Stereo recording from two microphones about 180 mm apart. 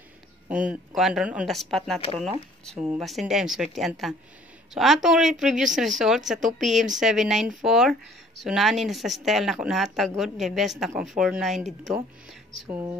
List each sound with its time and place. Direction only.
0.5 s a woman's voice: 5° right (ahead or behind)